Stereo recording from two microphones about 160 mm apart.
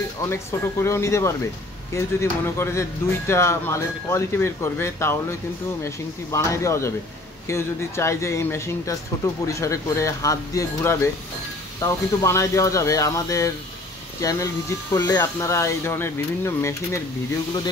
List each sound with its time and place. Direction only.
0.3 s speech: 15° left (ahead or behind)